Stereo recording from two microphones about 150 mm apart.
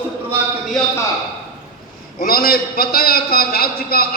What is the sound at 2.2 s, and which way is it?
A man's voice, 85° left.